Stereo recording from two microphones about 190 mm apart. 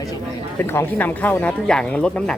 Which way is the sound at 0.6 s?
10° left (ahead or behind).